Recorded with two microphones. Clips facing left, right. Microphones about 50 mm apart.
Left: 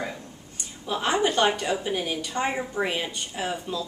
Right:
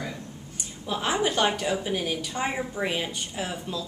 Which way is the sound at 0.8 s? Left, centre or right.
Centre.